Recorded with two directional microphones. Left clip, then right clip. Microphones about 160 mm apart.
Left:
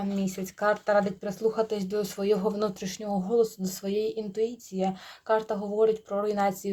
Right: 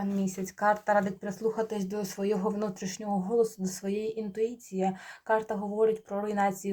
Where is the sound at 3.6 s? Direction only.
40° left (ahead or behind).